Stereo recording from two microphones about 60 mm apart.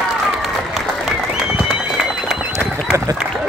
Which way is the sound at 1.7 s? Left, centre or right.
Centre.